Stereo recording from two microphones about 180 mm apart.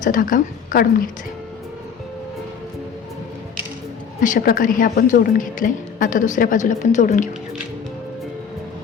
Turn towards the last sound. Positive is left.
turn(degrees=45)  # may be behind; listen again after turning